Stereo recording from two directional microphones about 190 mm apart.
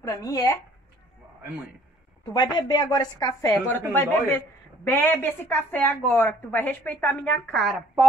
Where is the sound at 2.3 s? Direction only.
25° left (ahead or behind).